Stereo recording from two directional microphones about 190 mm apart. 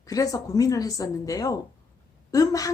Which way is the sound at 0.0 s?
20° left (ahead or behind).